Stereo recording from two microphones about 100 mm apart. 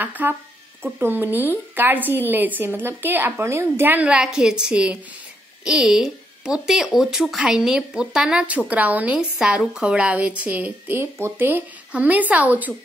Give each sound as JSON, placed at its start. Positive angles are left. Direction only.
{"t": 0.0, "sound": "a woman's voice", "side_deg": -20}
{"t": 4.1, "sound": "speech", "side_deg": -10}
{"t": 9.4, "sound": "speech", "side_deg": -5}